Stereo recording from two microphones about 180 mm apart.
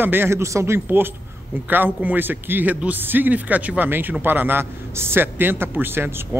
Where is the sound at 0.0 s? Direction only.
10° right (ahead or behind).